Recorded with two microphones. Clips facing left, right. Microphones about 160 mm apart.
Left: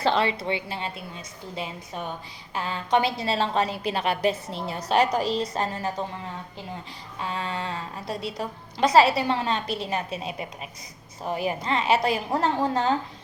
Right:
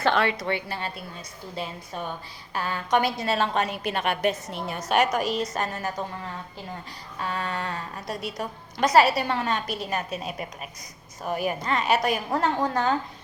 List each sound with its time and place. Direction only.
0.0 s a woman's voice: 25° left (ahead or behind)
2.6 s a woman's voice: 25° left (ahead or behind)
7.2 s a woman's voice: 25° left (ahead or behind)
11.2 s a woman's voice: 25° left (ahead or behind)